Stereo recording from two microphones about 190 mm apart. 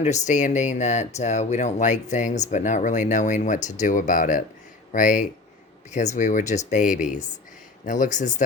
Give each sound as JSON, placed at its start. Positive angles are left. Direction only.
{"t": 0.0, "sound": "speech", "side_deg": 40}